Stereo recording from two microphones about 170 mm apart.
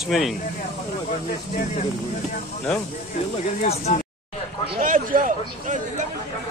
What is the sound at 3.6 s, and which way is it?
Speech, 45° left (ahead or behind).